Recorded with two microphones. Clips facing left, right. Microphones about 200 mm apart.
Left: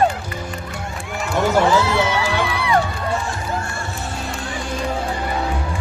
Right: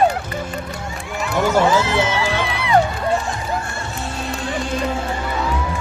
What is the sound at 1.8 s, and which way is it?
Music, 20° right (ahead or behind).